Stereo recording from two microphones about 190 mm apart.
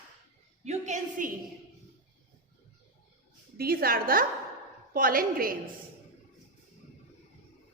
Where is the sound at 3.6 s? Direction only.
50° right (ahead or behind).